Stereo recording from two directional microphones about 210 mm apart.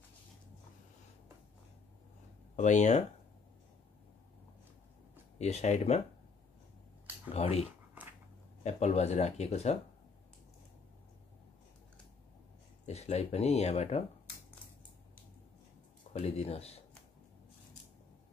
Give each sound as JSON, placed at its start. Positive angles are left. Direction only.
{"t": 2.5, "sound": "speech", "side_deg": 35}
{"t": 5.4, "sound": "speech", "side_deg": 30}
{"t": 7.3, "sound": "speech", "side_deg": 30}
{"t": 8.6, "sound": "speech", "side_deg": 30}
{"t": 12.8, "sound": "speech", "side_deg": 30}
{"t": 16.1, "sound": "speech", "side_deg": 30}